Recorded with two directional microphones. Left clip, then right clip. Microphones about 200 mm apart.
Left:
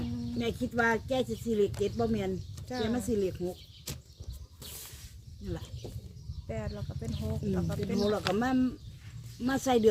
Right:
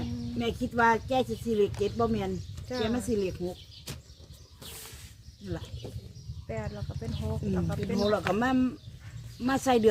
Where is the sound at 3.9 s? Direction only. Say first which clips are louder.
Even; 35° left (ahead or behind).